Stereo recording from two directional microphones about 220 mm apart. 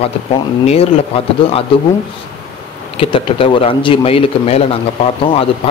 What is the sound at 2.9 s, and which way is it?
A man's voice, 25° left (ahead or behind).